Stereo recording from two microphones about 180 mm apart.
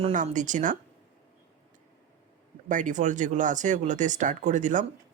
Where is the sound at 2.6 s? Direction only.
45° right (ahead or behind).